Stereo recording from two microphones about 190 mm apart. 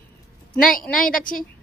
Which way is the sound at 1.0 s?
45° left (ahead or behind).